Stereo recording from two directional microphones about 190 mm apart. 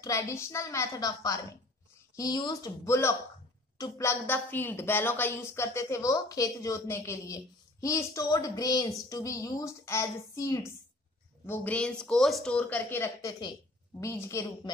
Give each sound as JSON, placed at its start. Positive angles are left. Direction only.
{"t": 0.0, "sound": "a woman's voice", "side_deg": 15}